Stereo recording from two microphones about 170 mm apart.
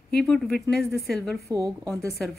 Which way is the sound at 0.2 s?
Centre (ahead or behind).